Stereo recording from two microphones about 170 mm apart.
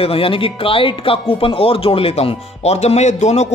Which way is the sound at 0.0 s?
35° left (ahead or behind).